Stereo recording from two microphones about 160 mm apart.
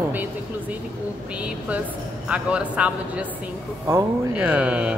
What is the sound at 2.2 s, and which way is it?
Speech, 5° right (ahead or behind).